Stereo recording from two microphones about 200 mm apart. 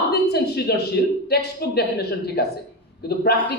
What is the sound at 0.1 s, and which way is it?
A man's voice, 55° left (ahead or behind).